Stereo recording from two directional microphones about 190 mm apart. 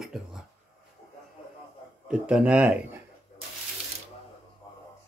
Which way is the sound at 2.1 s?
5° right (ahead or behind).